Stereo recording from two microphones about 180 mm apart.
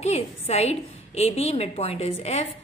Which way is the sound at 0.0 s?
35° left (ahead or behind).